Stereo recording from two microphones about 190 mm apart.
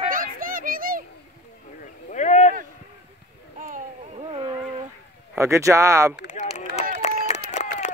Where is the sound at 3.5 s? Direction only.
45° right (ahead or behind).